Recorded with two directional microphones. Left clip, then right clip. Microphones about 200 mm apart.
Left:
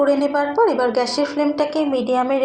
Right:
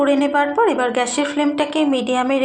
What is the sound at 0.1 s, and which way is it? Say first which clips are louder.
Speech: right 1 dB; 40° right (ahead or behind).